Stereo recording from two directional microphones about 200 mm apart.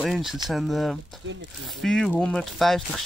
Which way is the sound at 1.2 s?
60° right (ahead or behind).